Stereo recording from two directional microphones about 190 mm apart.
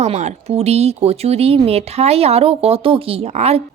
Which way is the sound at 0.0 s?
35° right (ahead or behind).